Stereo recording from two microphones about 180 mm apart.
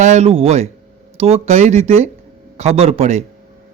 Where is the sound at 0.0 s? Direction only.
40° right (ahead or behind).